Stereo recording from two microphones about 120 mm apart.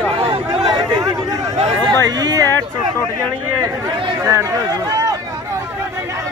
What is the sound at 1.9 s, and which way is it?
Speech, 35° right (ahead or behind).